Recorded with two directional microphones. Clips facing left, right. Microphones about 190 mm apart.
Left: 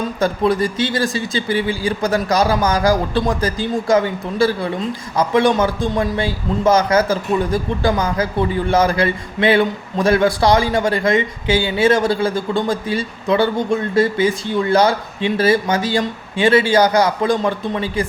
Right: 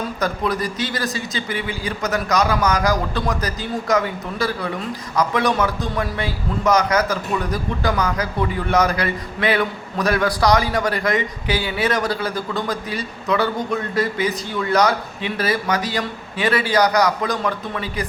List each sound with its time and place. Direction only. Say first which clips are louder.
0.2 s speech: left 7 dB; 25° left (ahead or behind)